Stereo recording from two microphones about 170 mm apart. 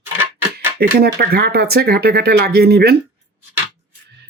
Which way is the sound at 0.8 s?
65° right (ahead or behind).